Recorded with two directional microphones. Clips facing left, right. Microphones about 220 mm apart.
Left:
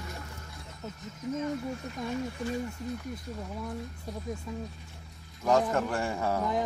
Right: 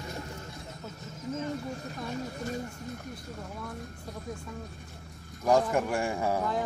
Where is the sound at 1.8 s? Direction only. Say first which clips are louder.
Left 2 dB; 40° right (ahead or behind).